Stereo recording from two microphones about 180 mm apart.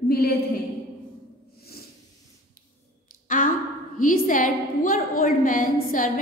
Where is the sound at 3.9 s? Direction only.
50° left (ahead or behind).